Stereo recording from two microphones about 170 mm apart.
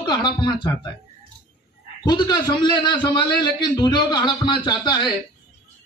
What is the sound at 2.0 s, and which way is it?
A man's voice, 25° left (ahead or behind).